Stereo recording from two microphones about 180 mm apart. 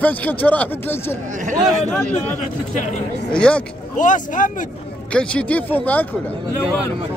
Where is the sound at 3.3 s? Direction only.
5° left (ahead or behind).